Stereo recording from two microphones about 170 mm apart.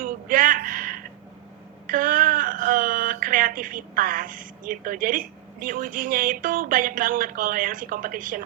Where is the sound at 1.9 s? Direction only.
55° right (ahead or behind).